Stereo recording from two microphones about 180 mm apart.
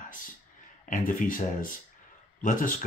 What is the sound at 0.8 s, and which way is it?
Speech, 50° left (ahead or behind).